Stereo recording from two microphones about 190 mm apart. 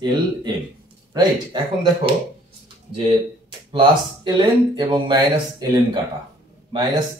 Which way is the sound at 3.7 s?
25° right (ahead or behind).